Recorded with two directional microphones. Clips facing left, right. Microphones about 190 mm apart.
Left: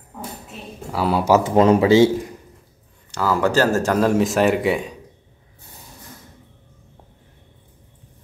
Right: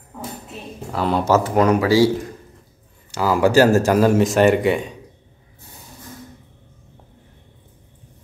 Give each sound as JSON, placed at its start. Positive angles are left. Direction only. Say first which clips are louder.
{"t": 0.9, "sound": "speech", "louder": "left 1 dB", "side_deg": 5}
{"t": 1.5, "sound": "speech", "louder": "left 4 dB", "side_deg": 25}
{"t": 3.1, "sound": "speech", "louder": "right 2 dB", "side_deg": -10}